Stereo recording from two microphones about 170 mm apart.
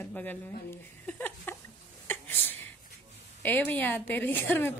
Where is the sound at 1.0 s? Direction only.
10° left (ahead or behind).